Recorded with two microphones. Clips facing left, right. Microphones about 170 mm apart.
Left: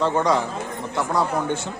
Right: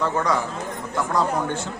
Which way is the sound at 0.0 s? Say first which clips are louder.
Left 3 dB; 20° left (ahead or behind).